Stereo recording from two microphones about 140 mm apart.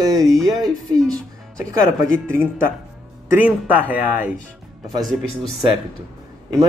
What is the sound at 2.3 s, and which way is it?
Speech, 15° right (ahead or behind).